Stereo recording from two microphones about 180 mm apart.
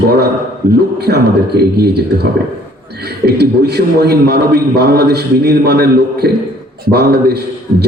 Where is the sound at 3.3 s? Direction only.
65° right (ahead or behind).